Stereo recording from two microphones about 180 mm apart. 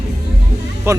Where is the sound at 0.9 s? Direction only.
15° right (ahead or behind).